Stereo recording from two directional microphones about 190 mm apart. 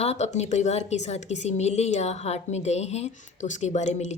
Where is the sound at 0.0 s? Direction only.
35° left (ahead or behind).